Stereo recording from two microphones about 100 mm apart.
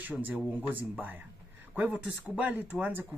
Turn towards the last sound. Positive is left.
turn(degrees=-15)  # may be behind; listen again after turning